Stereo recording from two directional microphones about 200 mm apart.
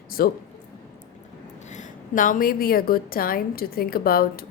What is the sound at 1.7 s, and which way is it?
A woman's voice, 40° left (ahead or behind).